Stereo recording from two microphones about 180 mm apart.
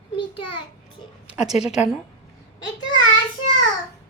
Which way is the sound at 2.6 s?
90° left.